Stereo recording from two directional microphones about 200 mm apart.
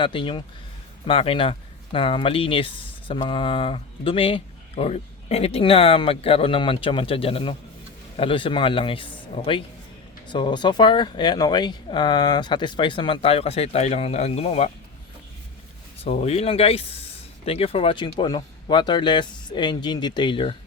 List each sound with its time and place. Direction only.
0.0 s speech: 25° left (ahead or behind)
16.0 s speech: 30° left (ahead or behind)